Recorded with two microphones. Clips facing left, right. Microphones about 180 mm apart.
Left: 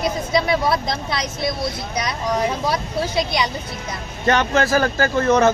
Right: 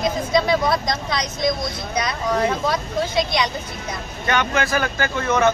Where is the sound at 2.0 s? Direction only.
10° left (ahead or behind).